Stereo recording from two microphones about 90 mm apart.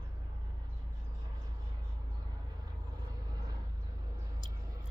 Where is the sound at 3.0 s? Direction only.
45° right (ahead or behind).